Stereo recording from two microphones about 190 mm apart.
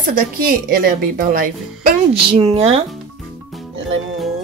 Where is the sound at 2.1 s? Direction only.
30° right (ahead or behind).